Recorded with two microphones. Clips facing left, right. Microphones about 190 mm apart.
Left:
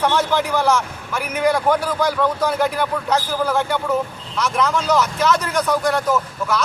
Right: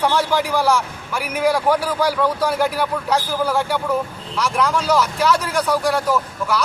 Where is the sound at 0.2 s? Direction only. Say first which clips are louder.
Even; 10° right (ahead or behind).